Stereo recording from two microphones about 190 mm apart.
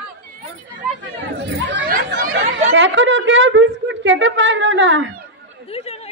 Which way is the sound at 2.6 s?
75° right (ahead or behind).